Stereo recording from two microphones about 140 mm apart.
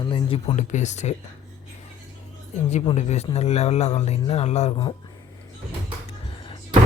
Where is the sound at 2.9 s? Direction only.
50° left (ahead or behind).